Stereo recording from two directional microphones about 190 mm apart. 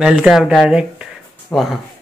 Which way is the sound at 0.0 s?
5° right (ahead or behind).